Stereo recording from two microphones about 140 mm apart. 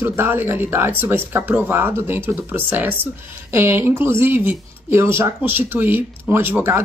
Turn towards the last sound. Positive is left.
turn(degrees=-15)  # may be behind; listen again after turning